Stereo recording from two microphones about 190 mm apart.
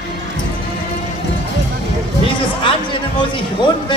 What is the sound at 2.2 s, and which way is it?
Speech, 25° left (ahead or behind).